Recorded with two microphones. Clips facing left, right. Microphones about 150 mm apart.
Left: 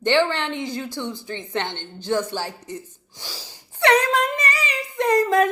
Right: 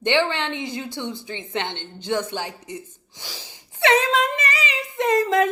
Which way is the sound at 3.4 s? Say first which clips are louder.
Left 1 dB; 20° right (ahead or behind).